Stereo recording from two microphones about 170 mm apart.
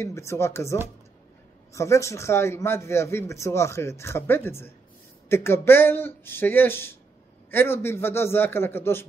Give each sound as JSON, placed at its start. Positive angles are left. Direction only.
{"t": 0.0, "sound": "a man's voice", "side_deg": 15}